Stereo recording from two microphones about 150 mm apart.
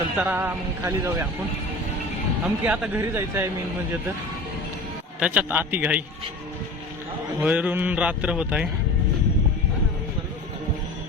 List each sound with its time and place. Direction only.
0.2 s speech: 10° right (ahead or behind)
2.6 s speech: 10° right (ahead or behind)
5.2 s speech: 10° right (ahead or behind)
7.4 s speech: 10° right (ahead or behind)